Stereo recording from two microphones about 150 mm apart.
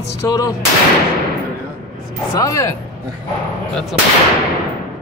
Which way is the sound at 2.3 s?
20° left (ahead or behind).